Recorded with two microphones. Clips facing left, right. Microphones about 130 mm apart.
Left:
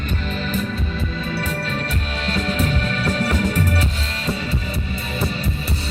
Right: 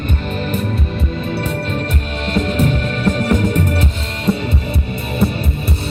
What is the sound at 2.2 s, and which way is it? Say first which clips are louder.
Music: right 6 dB; 55° right (ahead or behind).